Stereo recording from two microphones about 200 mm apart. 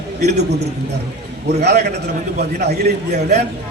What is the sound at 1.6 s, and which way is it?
A man's voice, 55° right (ahead or behind).